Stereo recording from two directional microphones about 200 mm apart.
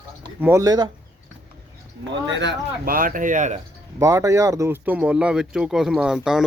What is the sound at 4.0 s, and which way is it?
Speech, 15° right (ahead or behind).